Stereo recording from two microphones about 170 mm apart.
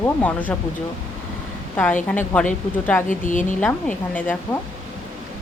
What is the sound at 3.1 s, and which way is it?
Speech, 50° left (ahead or behind).